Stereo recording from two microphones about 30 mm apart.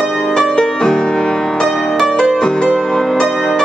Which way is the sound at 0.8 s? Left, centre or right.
Centre.